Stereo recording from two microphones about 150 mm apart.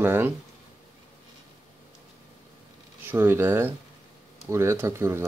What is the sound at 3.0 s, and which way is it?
Speech, 15° right (ahead or behind).